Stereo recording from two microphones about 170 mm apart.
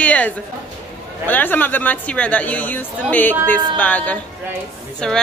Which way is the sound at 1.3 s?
10° left (ahead or behind).